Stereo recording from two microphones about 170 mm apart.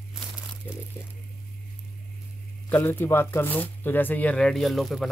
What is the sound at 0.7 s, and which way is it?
Speech, 10° left (ahead or behind).